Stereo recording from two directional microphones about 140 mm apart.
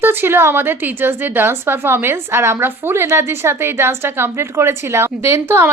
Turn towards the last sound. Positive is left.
turn(degrees=-20)  # may be behind; listen again after turning